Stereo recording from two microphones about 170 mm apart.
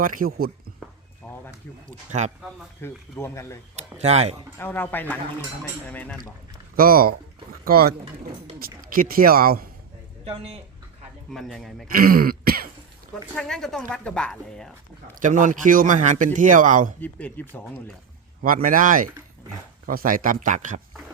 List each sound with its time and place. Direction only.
0.0 s speech: 55° right (ahead or behind)
1.2 s a sound: 10° left (ahead or behind)
1.9 s speech: 45° right (ahead or behind)
2.8 s speech: 15° left (ahead or behind)
3.8 s speech: 40° right (ahead or behind)
4.5 s speech: 10° left (ahead or behind)
6.7 s speech: 60° right (ahead or behind)
10.2 s speech: 35° right (ahead or behind)
11.3 s speech: centre (ahead or behind)
11.9 s speech: 60° right (ahead or behind)
13.3 s speech: 5° left (ahead or behind)
15.2 s speech: 50° right (ahead or behind)
17.0 s speech: 10° left (ahead or behind)
18.4 s speech: 55° right (ahead or behind)